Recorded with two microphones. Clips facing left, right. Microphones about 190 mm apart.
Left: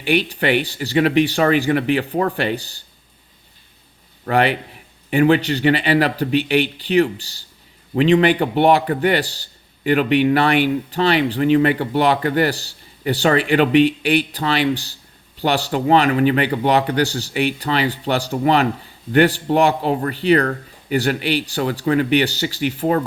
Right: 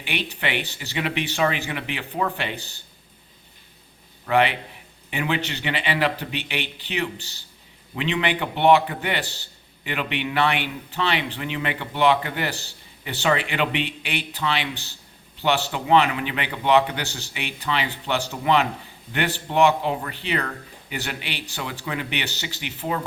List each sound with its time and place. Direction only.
0.0 s speech: 40° left (ahead or behind)
4.3 s speech: 40° left (ahead or behind)